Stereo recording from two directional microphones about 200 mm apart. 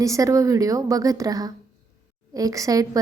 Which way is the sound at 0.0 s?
15° right (ahead or behind).